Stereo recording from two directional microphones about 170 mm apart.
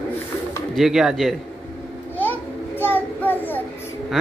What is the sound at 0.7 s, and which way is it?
Speech, 5° right (ahead or behind).